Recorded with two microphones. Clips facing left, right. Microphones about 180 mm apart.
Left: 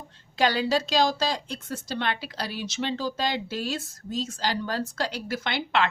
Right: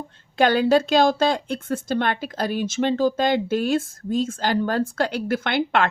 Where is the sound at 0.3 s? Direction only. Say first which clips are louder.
Right 7 dB; 55° right (ahead or behind).